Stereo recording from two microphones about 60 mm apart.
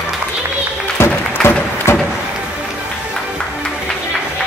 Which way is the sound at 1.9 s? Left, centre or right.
Left.